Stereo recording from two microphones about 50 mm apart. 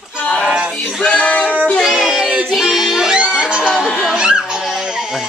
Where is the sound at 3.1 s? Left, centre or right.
Centre.